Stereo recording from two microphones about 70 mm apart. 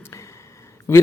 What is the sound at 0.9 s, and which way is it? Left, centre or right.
Speech, left.